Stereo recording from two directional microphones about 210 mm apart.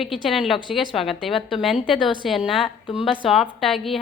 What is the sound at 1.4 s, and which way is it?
Speech, 25° left (ahead or behind).